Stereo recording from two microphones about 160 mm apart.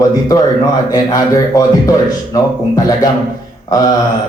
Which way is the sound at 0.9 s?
20° left (ahead or behind).